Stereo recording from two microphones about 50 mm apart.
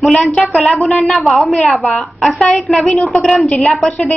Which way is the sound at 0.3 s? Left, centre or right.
Centre.